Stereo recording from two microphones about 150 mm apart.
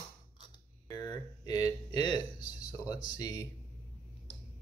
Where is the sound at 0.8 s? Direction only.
25° left (ahead or behind).